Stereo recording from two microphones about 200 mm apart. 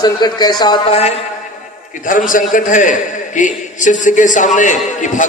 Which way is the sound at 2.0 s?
40° left (ahead or behind).